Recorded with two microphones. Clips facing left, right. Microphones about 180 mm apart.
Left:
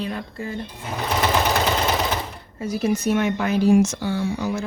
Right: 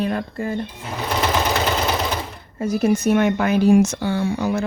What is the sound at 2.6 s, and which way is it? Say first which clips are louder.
Speech: right 4 dB; 50° right (ahead or behind).